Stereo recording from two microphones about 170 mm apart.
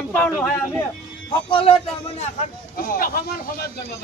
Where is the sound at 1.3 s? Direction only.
30° left (ahead or behind).